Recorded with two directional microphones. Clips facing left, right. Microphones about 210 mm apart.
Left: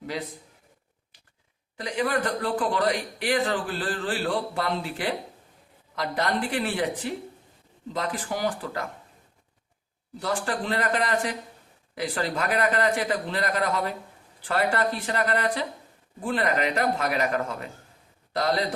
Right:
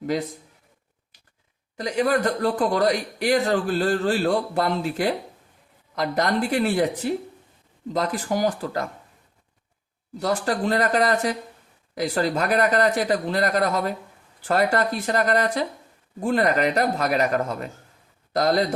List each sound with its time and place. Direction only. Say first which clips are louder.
0.0 s a man's voice: right 7 dB; 45° right (ahead or behind)
1.7 s speech: right 5 dB; 40° right (ahead or behind)
10.2 s speech: right 5 dB; 40° right (ahead or behind)